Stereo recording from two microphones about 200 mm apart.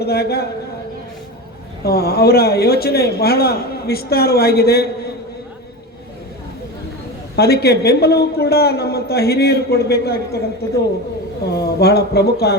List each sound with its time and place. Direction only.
0.0 s a man's voice: 50° left (ahead or behind)
1.8 s a man's voice: 50° left (ahead or behind)
7.3 s a man's voice: 50° left (ahead or behind)